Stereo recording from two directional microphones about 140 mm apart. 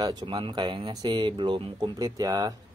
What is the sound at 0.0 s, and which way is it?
Speech, 30° right (ahead or behind).